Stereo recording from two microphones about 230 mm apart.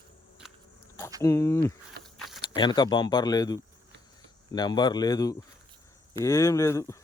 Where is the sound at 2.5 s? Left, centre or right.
Centre.